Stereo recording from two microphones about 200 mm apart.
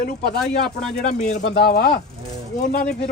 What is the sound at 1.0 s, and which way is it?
Speech, 35° left (ahead or behind).